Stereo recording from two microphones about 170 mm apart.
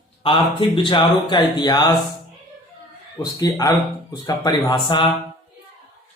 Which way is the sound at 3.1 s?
20° left (ahead or behind).